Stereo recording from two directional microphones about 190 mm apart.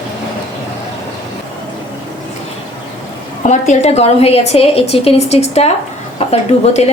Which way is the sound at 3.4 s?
40° left (ahead or behind).